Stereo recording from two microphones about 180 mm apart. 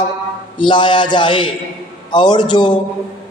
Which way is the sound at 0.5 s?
25° left (ahead or behind).